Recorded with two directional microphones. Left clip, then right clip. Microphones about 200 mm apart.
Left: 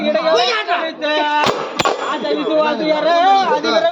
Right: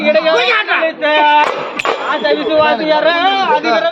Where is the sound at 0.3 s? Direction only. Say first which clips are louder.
Right 3 dB; 30° left (ahead or behind).